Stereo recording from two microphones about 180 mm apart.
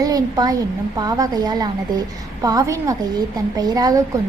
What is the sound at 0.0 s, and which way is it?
A woman's voice, 20° right (ahead or behind).